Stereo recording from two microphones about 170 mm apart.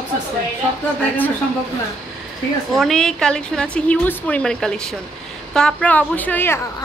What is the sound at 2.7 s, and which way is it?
A woman's voice, centre (ahead or behind).